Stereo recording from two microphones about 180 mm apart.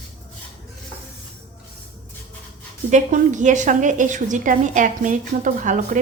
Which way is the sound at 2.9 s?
45° right (ahead or behind).